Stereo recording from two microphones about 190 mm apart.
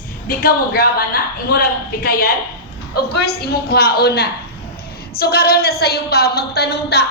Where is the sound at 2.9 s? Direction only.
55° left (ahead or behind).